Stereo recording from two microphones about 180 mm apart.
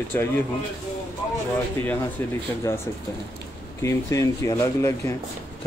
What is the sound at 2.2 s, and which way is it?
Speech, 10° left (ahead or behind).